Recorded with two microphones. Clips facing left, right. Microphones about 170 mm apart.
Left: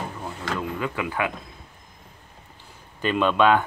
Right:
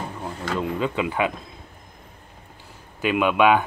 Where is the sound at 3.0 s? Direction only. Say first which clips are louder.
Right 1 dB; 10° right (ahead or behind).